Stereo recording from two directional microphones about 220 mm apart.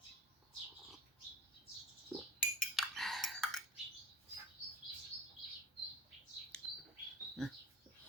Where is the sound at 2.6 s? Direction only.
Centre (ahead or behind).